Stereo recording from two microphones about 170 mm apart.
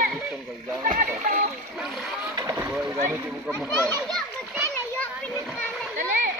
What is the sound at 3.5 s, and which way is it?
Children playing, centre (ahead or behind).